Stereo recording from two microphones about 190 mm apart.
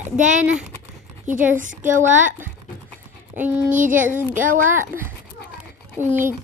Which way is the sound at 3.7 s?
45° right (ahead or behind).